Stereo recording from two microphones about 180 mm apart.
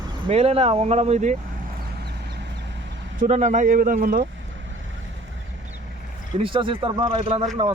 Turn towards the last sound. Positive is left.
turn(degrees=-30)  # may be behind; listen again after turning